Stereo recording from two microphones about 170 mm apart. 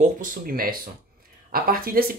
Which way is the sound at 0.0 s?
55° right (ahead or behind).